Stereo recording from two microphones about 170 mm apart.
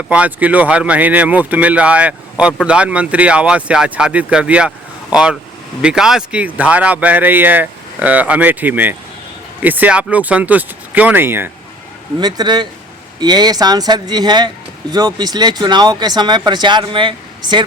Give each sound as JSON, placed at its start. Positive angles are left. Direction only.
{"t": 0.1, "sound": "speech", "side_deg": -10}
{"t": 12.2, "sound": "speech", "side_deg": -25}